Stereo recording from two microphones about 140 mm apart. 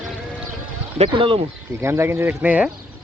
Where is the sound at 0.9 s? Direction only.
40° right (ahead or behind).